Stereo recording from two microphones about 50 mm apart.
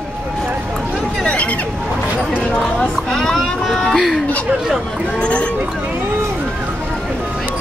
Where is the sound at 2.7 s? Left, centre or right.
Centre.